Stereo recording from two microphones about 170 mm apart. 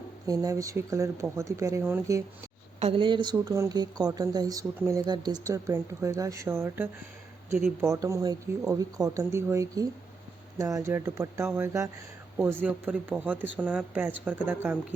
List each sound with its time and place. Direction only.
0.3 s speech: 20° right (ahead or behind)
2.8 s speech: 30° right (ahead or behind); by 14.8 s 10° right (ahead or behind)